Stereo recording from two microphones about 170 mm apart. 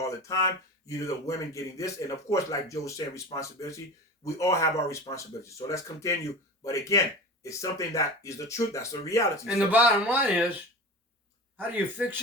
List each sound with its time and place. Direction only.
0.0 s speech: 20° left (ahead or behind)
9.7 s speech: 10° right (ahead or behind)
12.0 s speech: 10° right (ahead or behind)